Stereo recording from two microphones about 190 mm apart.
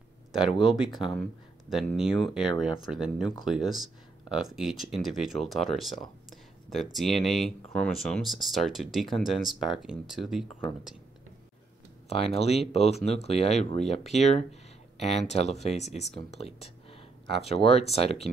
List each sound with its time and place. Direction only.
0.3 s speech: centre (ahead or behind)
0.8 s speech: 25° left (ahead or behind)
1.7 s speech: centre (ahead or behind)
12.1 s speech: 30° left (ahead or behind)
16.6 s a sound: 30° left (ahead or behind)